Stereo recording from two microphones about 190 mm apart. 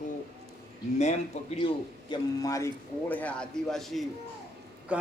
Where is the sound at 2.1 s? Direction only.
20° left (ahead or behind).